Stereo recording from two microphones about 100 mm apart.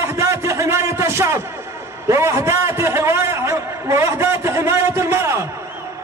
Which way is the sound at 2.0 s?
30° right (ahead or behind).